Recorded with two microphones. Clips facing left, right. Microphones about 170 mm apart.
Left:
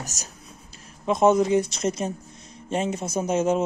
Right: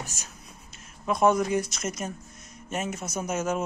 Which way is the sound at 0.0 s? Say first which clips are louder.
Left 2 dB; 40° left (ahead or behind).